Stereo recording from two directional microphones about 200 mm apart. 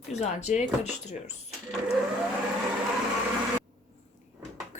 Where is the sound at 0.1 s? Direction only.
35° left (ahead or behind).